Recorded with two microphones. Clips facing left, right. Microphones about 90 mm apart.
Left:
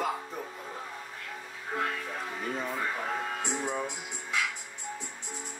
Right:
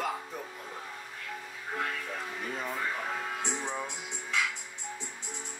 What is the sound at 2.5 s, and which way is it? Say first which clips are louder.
A man's voice: left 1 dB; centre (ahead or behind).